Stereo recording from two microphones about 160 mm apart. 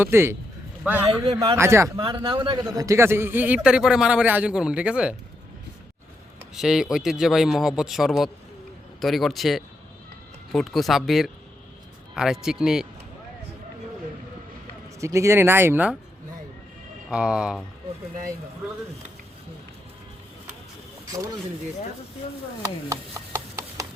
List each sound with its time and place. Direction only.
0.0 s a man's voice: 15° right (ahead or behind)
2.0 s speech: 35° right (ahead or behind)
2.6 s a man's voice: 20° right (ahead or behind)
6.5 s a man's voice: 5° right (ahead or behind)
15.0 s a man's voice: 20° right (ahead or behind)
17.1 s a man's voice: 5° right (ahead or behind)
22.9 s chopping: 20° right (ahead or behind)